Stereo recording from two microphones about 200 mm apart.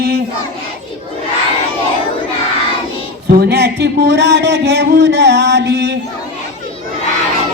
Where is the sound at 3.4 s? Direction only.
55° right (ahead or behind).